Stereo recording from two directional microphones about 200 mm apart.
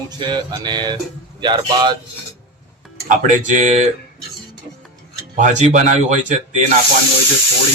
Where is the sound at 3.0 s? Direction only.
40° right (ahead or behind).